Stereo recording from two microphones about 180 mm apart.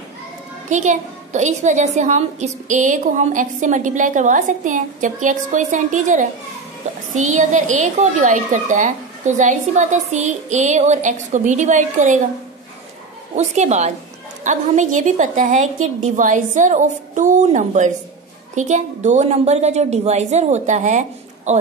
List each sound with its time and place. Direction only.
0.7 s a woman's voice: 40° right (ahead or behind)
13.4 s a woman's voice: 40° right (ahead or behind)